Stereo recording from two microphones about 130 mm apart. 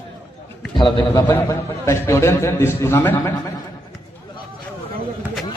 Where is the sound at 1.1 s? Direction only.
20° left (ahead or behind).